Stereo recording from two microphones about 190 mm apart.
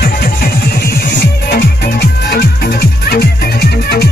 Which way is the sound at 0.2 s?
55° left (ahead or behind).